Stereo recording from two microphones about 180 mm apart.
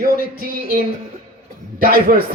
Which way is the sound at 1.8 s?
55° right (ahead or behind).